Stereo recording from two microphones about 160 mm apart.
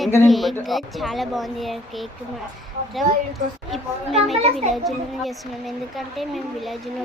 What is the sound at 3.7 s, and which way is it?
A child's voice, centre (ahead or behind).